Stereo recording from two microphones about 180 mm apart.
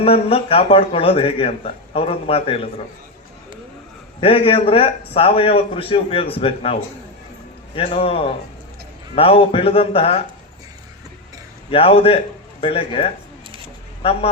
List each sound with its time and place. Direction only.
0.0 s speech: 30° left (ahead or behind)
4.2 s speech: 30° left (ahead or behind)
7.8 s speech: 35° left (ahead or behind)
11.7 s a man's voice: 30° left (ahead or behind)